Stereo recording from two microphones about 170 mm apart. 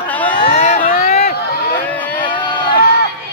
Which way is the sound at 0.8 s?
55° left (ahead or behind).